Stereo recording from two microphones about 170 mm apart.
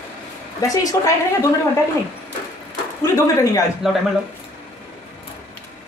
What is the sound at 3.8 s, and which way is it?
Speech, centre (ahead or behind).